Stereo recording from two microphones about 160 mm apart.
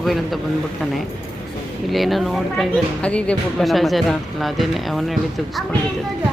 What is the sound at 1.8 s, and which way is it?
Speech, centre (ahead or behind).